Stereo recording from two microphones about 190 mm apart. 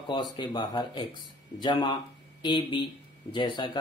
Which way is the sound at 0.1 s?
25° left (ahead or behind).